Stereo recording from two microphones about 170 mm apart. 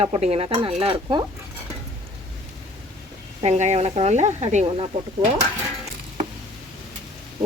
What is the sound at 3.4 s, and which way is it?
Speech, 40° right (ahead or behind).